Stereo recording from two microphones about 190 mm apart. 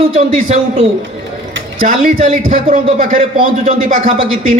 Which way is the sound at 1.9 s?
35° right (ahead or behind).